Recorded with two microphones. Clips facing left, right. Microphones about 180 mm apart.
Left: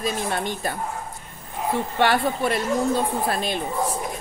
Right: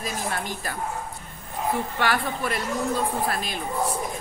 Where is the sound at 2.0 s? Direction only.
25° left (ahead or behind).